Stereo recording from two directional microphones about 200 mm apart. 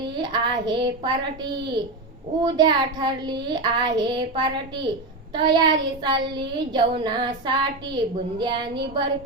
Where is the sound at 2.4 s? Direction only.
20° right (ahead or behind).